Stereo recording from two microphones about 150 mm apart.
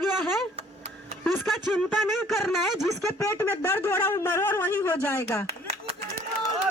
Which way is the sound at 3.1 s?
15° left (ahead or behind).